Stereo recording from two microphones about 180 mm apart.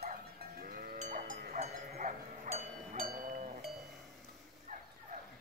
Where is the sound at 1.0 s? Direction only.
45° right (ahead or behind).